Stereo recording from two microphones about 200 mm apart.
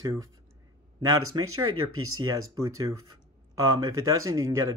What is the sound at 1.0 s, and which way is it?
Speech, 90° right.